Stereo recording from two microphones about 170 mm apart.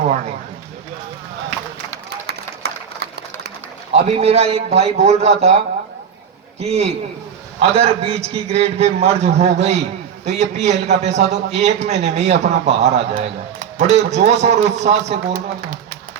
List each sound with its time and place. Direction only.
3.9 s a man's voice: 35° right (ahead or behind)
6.6 s a man's voice: 40° right (ahead or behind)